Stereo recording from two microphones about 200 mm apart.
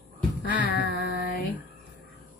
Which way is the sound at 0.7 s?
50° left (ahead or behind).